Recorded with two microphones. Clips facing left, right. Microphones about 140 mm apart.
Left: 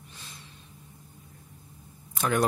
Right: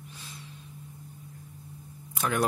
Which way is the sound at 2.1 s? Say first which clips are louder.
Left 3 dB; 5° right (ahead or behind).